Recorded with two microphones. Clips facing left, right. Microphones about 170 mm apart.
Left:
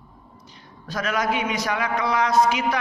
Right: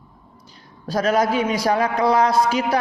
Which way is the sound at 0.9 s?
35° right (ahead or behind).